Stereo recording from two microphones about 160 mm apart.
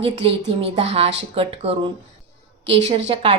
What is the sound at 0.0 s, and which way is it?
A woman's voice, 35° right (ahead or behind).